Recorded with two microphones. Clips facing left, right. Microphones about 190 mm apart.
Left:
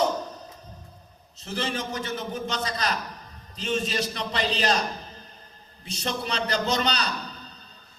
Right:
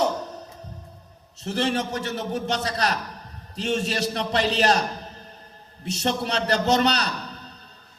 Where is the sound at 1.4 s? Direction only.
65° right (ahead or behind).